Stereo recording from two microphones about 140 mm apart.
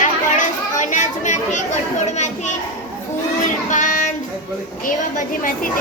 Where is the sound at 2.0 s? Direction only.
55° left (ahead or behind).